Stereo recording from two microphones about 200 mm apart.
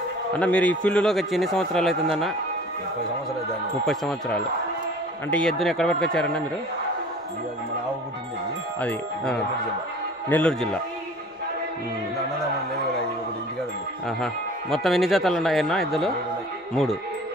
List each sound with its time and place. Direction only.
0.4 s speech: 5° left (ahead or behind)
3.8 s speech: centre (ahead or behind)
8.8 s speech: 5° left (ahead or behind)
14.0 s speech: centre (ahead or behind)